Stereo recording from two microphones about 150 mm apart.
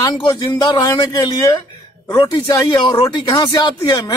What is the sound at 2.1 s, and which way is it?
Speech, 30° left (ahead or behind).